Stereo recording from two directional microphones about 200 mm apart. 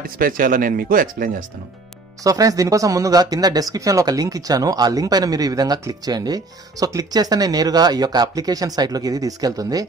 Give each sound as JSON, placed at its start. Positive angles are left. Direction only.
{"t": 0.0, "sound": "speech", "side_deg": -45}
{"t": 2.2, "sound": "speech", "side_deg": -15}